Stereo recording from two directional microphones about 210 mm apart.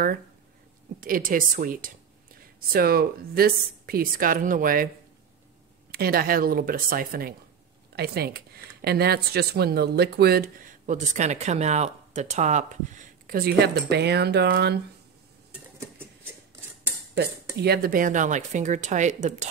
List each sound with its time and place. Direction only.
1.0 s speech: 40° right (ahead or behind)
5.9 s speech: 45° right (ahead or behind)
17.1 s speech: 50° right (ahead or behind)